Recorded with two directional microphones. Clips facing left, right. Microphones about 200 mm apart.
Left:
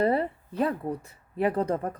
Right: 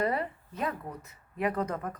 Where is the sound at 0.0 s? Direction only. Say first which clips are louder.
Left 6 dB; 30° left (ahead or behind).